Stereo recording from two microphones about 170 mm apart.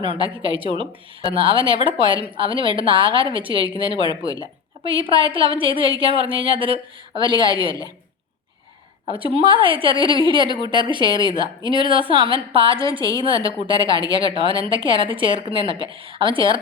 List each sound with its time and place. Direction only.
0.5 s a woman's voice: 30° right (ahead or behind)
9.0 s a woman's voice: 30° right (ahead or behind)